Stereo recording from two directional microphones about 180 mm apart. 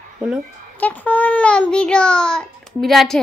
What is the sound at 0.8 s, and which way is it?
A child's voice, 10° left (ahead or behind).